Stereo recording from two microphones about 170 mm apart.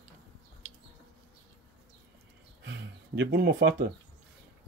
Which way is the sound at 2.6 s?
90° right.